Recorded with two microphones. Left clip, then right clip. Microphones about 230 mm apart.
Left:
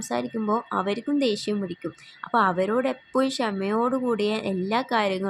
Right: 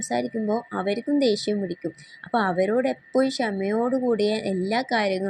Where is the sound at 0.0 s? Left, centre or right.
Centre.